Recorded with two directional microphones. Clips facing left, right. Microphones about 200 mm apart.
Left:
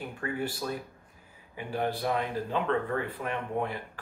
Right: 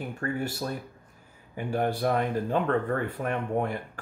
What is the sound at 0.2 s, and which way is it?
Speech, 45° right (ahead or behind).